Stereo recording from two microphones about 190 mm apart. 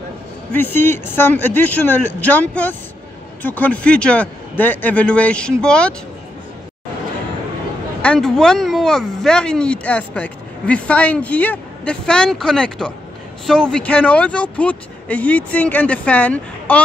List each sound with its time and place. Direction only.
0.5 s speech: 10° left (ahead or behind)
8.0 s speech: 5° left (ahead or behind)